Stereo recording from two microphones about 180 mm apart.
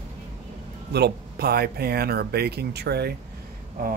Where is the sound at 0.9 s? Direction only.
60° right (ahead or behind).